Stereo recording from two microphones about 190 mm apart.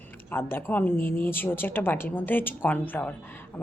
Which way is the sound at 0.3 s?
10° left (ahead or behind).